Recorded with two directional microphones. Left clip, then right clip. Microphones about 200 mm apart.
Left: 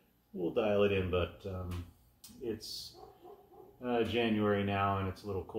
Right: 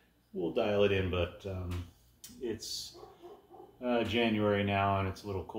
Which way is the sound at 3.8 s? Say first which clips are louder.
Right 2 dB; 15° right (ahead or behind).